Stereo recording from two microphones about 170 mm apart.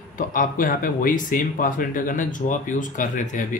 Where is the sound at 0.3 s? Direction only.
55° left (ahead or behind).